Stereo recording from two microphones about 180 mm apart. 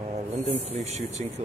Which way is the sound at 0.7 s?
35° right (ahead or behind).